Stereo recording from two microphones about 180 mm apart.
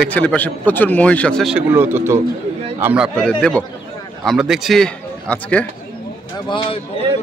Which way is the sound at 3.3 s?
5° left (ahead or behind).